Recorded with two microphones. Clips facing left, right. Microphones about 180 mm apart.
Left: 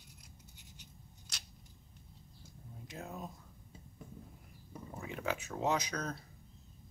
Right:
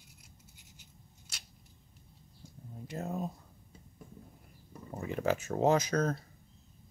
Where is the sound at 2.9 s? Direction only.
45° right (ahead or behind).